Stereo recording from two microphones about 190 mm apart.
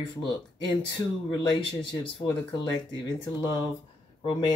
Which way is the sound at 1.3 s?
25° left (ahead or behind).